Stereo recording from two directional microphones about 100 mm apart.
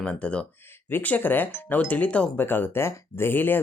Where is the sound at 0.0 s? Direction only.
10° left (ahead or behind).